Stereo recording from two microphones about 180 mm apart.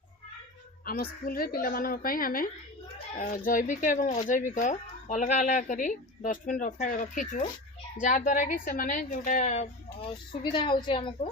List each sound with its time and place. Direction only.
0.9 s speech: 55° left (ahead or behind)
10.4 s a woman's voice: 25° left (ahead or behind)